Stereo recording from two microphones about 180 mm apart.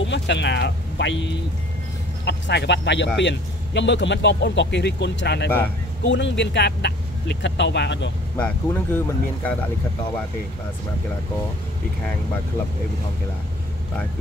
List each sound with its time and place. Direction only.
0.0 s speech: 80° left
6.0 s speech: 80° left
8.4 s speech: 10° left (ahead or behind)